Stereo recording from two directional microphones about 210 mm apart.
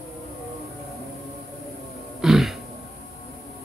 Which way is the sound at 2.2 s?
Centre (ahead or behind).